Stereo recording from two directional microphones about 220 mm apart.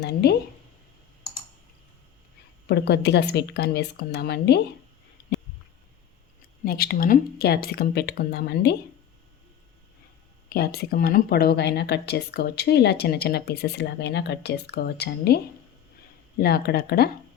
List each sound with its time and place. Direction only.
0.0 s speech: 45° left (ahead or behind)
2.6 s speech: 50° left (ahead or behind)
6.7 s speech: 40° left (ahead or behind)
10.5 s speech: 45° left (ahead or behind)
16.4 s speech: 45° left (ahead or behind)